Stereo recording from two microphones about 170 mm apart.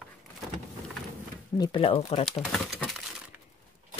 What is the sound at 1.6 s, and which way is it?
Speech, 30° left (ahead or behind).